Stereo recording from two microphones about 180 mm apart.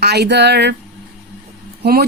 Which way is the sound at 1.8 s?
60° right (ahead or behind).